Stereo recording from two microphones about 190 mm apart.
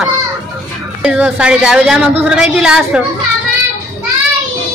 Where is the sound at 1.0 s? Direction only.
5° right (ahead or behind).